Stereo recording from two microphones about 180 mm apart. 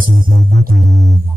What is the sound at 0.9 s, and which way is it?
Music, centre (ahead or behind).